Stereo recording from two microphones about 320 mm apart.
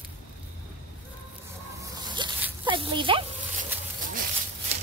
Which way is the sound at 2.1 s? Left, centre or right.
Centre.